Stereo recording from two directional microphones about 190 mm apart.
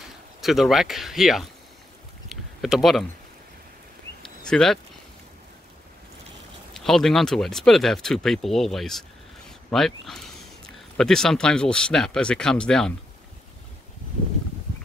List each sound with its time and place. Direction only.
0.4 s speech: centre (ahead or behind)
2.2 s a sound: centre (ahead or behind)
4.5 s speech: 5° left (ahead or behind)
6.7 s speech: centre (ahead or behind)